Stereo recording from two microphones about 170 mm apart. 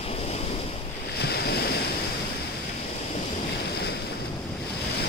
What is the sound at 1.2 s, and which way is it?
Waves, 70° left (ahead or behind).